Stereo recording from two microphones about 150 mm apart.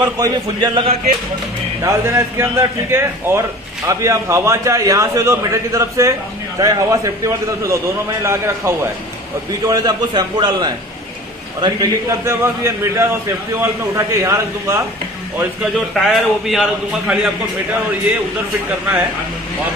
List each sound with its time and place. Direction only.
0.0 s a man's voice: 25° right (ahead or behind)
15.9 s a man's voice: centre (ahead or behind)